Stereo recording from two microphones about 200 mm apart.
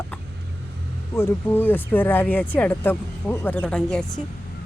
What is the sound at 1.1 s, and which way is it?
Speech, 10° left (ahead or behind).